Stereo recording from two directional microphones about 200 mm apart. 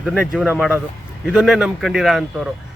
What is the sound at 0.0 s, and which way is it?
A man's voice, centre (ahead or behind).